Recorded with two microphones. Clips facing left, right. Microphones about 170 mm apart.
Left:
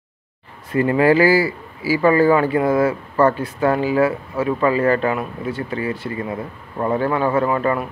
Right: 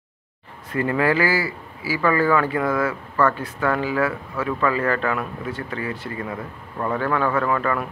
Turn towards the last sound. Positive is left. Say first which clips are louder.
# left 4 dB
turn(degrees=25)  # may be behind; listen again after turning